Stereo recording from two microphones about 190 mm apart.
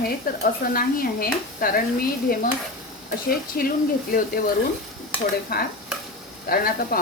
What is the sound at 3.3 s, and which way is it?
Speech, 50° left (ahead or behind).